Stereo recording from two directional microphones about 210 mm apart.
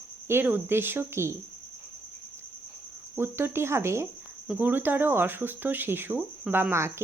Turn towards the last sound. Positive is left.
turn(degrees=-10)  # may be behind; listen again after turning